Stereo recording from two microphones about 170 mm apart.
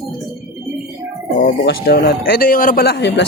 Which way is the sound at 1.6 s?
65° left (ahead or behind).